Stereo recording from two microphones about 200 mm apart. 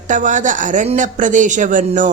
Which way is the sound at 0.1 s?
40° right (ahead or behind).